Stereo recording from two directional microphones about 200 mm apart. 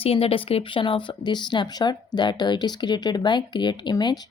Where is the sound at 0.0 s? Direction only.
30° left (ahead or behind).